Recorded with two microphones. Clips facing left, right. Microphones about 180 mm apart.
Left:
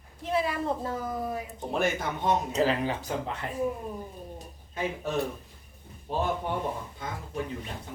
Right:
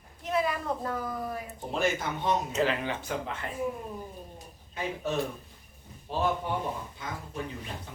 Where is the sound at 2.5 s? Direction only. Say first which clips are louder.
Left 2 dB; 35° left (ahead or behind).